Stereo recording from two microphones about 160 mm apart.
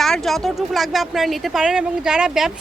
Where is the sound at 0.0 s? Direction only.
Centre (ahead or behind).